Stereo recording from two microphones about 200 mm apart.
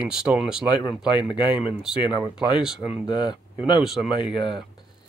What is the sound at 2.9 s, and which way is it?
Speech, 20° left (ahead or behind).